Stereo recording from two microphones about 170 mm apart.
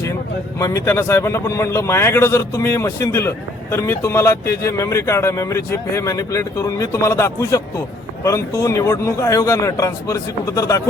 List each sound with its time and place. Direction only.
0.6 s a man's voice: 15° left (ahead or behind)